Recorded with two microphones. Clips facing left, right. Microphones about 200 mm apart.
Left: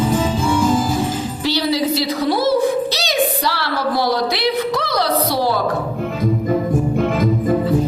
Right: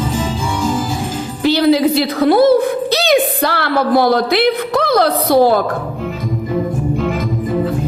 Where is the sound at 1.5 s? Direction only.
55° right (ahead or behind).